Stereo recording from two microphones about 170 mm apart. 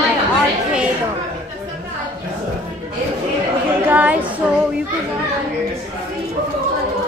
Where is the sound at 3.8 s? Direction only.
10° right (ahead or behind).